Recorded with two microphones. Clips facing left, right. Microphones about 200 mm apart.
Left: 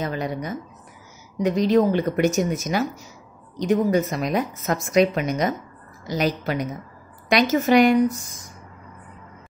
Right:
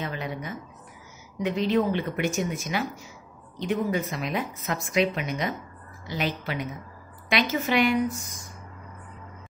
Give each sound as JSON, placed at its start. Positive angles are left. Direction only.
{"t": 0.0, "sound": "a woman's voice", "side_deg": 40}